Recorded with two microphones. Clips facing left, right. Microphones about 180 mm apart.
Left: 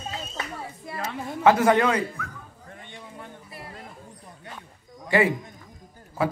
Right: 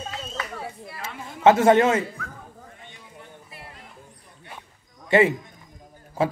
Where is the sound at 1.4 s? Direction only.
25° right (ahead or behind).